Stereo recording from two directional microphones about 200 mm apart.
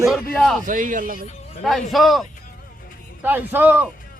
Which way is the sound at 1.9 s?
Centre (ahead or behind).